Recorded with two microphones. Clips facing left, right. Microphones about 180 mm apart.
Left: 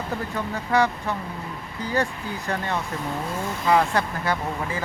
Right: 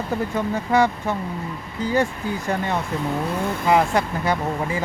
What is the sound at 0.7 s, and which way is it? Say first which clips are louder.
Speech: right 3 dB; 20° right (ahead or behind).